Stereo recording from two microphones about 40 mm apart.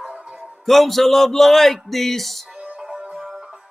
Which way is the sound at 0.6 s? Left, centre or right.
Centre.